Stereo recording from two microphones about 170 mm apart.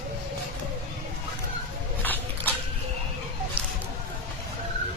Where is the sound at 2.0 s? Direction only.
10° left (ahead or behind).